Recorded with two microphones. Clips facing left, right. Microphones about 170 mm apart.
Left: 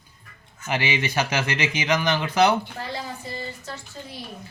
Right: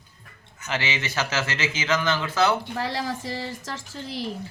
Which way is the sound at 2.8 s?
90° right.